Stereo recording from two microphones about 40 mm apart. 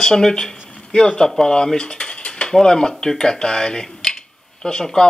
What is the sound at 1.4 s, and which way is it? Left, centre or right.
Cutlery, centre.